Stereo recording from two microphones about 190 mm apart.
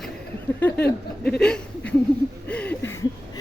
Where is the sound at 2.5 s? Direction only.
10° left (ahead or behind).